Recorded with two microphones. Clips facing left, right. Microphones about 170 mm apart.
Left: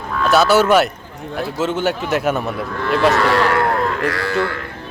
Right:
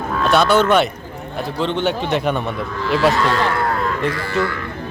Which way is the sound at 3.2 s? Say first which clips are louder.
Left 3 dB; 70° left (ahead or behind).